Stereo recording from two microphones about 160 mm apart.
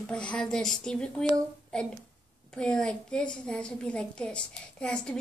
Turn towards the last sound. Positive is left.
turn(degrees=5)  # may be behind; listen again after turning